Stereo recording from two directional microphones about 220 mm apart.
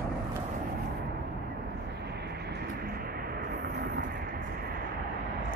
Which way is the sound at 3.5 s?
45° right (ahead or behind).